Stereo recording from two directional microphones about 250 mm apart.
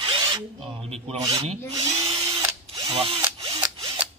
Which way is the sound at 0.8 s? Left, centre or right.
Right.